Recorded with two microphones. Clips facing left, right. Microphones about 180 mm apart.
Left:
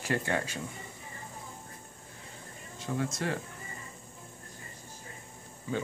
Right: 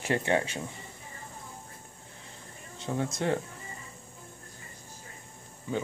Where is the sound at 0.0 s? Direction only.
25° right (ahead or behind).